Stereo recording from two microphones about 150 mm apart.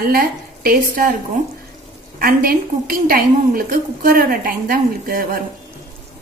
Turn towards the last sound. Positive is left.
turn(degrees=-75)  # may be behind; listen again after turning